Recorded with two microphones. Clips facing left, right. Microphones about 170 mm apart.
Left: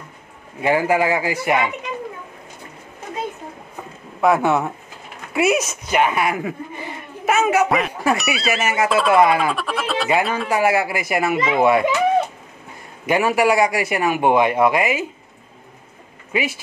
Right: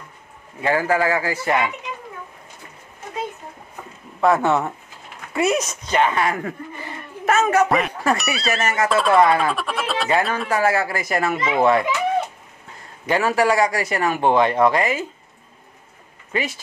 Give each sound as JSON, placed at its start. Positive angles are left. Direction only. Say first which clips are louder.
{"t": 0.6, "sound": "a man's voice", "louder": "left 2 dB", "side_deg": 15}
{"t": 4.2, "sound": "a man's voice", "louder": "left 1 dB", "side_deg": 10}
{"t": 7.2, "sound": "a sound", "louder": "even", "side_deg": 10}
{"t": 8.2, "sound": "a man's voice", "louder": "left 1 dB", "side_deg": 5}
{"t": 9.5, "sound": "a sound", "louder": "left 1 dB", "side_deg": 0}
{"t": 10.2, "sound": "speech", "louder": "left 1 dB", "side_deg": 0}
{"t": 10.5, "sound": "a man's voice", "louder": "left 2 dB", "side_deg": 15}
{"t": 13.0, "sound": "a man's voice", "louder": "left 2 dB", "side_deg": 15}
{"t": 16.3, "sound": "speech", "louder": "left 2 dB", "side_deg": 10}